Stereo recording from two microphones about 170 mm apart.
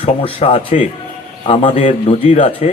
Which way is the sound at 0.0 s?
35° left (ahead or behind).